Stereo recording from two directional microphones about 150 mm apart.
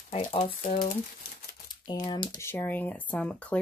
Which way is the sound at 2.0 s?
25° left (ahead or behind).